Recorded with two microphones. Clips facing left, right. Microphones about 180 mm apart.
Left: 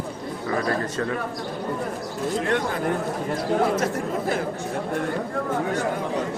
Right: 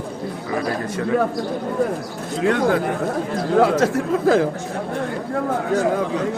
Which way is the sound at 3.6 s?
90° right.